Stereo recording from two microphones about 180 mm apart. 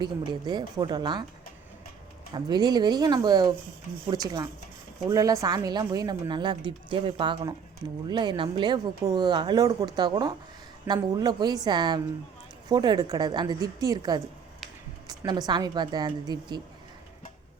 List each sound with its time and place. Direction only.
0.0 s a woman's voice: 25° right (ahead or behind)
2.3 s a woman's voice: 25° right (ahead or behind)